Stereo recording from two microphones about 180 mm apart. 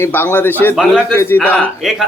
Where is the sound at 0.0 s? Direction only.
10° left (ahead or behind).